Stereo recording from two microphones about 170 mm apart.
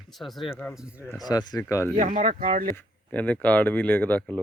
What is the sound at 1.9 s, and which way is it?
Speech, 50° right (ahead or behind).